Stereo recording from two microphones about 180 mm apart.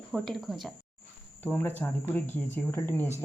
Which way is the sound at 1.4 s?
10° left (ahead or behind).